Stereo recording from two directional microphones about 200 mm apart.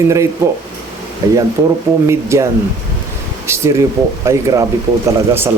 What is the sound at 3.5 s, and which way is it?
Speech, 15° right (ahead or behind).